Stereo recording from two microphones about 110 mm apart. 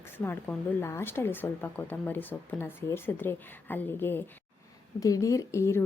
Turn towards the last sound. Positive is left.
turn(degrees=25)  # may be behind; listen again after turning